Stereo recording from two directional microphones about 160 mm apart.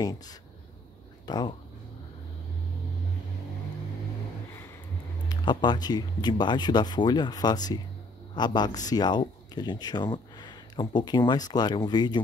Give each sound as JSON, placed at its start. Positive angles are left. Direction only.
{"t": 0.0, "sound": "speech", "side_deg": 25}
{"t": 5.3, "sound": "speech", "side_deg": 30}